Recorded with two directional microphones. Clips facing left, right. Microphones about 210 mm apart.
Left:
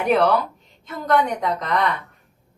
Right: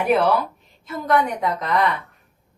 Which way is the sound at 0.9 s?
5° right (ahead or behind).